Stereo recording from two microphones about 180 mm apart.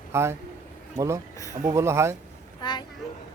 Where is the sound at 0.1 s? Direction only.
15° right (ahead or behind).